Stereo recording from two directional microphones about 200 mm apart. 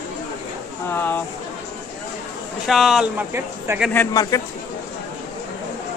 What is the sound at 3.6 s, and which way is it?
Speech, 15° right (ahead or behind).